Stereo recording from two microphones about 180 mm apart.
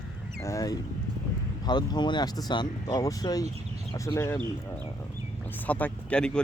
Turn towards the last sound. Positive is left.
turn(degrees=5)  # may be behind; listen again after turning